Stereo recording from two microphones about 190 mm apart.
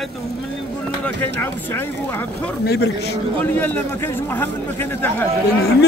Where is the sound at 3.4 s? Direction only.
10° left (ahead or behind).